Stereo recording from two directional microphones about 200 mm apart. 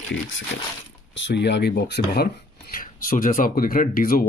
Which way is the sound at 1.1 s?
60° left (ahead or behind).